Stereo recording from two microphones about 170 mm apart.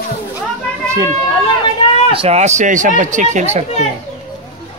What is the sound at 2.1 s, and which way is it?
Speech, 35° right (ahead or behind).